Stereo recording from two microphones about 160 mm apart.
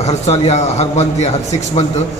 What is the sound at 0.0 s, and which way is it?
Speech, 40° left (ahead or behind).